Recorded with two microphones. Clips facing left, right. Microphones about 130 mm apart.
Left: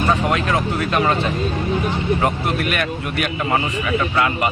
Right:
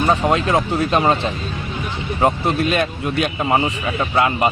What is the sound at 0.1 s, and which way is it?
Speech, 25° right (ahead or behind).